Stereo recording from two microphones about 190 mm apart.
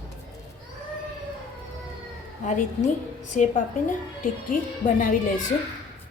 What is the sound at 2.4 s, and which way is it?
A woman's voice, 40° left (ahead or behind).